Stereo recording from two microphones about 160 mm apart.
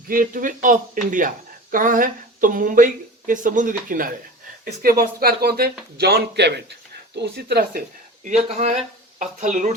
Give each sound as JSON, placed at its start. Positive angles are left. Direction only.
{"t": 0.1, "sound": "speech", "side_deg": -60}
{"t": 6.0, "sound": "speech", "side_deg": -85}
{"t": 8.2, "sound": "speech", "side_deg": -45}